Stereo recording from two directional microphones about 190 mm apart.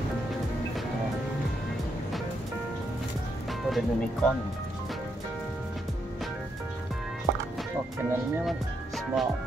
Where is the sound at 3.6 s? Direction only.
Centre (ahead or behind).